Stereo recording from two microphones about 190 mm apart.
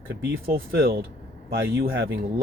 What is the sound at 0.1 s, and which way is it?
Speech, 50° right (ahead or behind).